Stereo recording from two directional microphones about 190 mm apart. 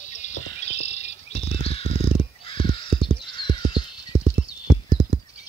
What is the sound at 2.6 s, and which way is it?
Crow, 25° left (ahead or behind).